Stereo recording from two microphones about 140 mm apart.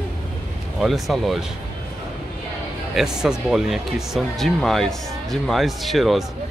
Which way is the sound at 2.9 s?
5° right (ahead or behind).